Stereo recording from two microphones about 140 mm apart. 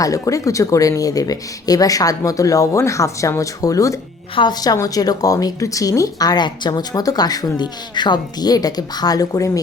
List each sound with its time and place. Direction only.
0.0 s speech: 25° left (ahead or behind)